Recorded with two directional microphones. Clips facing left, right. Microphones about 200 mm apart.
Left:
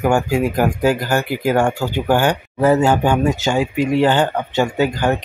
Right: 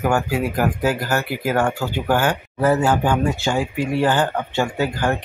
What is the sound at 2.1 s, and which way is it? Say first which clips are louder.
Speech: left 3 dB; 25° left (ahead or behind).